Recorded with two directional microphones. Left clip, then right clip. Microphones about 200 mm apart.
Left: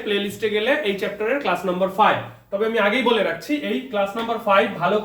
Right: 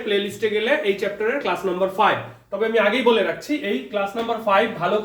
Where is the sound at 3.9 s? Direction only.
15° left (ahead or behind).